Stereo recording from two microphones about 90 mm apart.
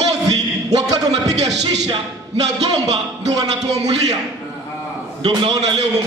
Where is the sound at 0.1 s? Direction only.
40° right (ahead or behind).